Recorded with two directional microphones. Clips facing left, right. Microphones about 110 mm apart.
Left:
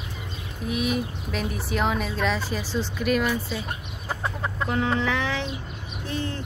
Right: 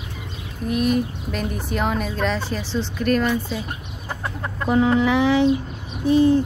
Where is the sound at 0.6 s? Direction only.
Centre (ahead or behind).